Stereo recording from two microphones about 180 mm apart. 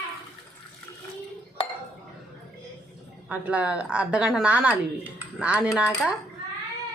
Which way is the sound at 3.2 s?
10° right (ahead or behind).